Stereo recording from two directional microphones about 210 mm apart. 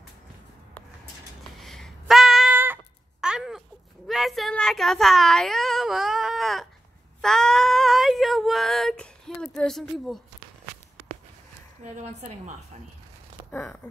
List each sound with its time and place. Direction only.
1.6 s a sound: centre (ahead or behind)
11.8 s a woman's voice: 35° right (ahead or behind)
13.5 s speech: 10° left (ahead or behind)